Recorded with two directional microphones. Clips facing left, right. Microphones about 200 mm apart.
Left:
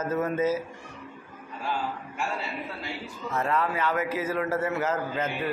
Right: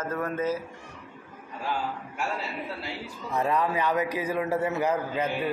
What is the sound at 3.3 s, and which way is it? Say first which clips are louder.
A man's voice: right 2 dB; 15° right (ahead or behind).